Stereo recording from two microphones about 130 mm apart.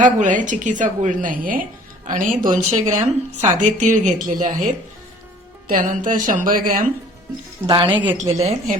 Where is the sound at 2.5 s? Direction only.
70° right (ahead or behind).